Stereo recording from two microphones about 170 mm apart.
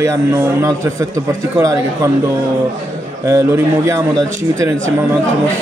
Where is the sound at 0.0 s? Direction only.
20° right (ahead or behind).